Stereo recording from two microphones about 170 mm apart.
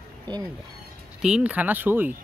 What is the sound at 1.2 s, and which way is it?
Speech, 5° right (ahead or behind).